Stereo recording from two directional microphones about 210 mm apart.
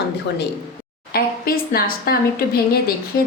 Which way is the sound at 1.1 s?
45° left (ahead or behind).